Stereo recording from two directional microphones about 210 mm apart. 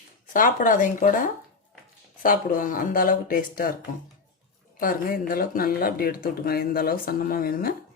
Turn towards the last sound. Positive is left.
turn(degrees=45)  # may be behind; listen again after turning